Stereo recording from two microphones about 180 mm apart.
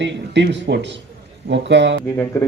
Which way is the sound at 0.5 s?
80° right.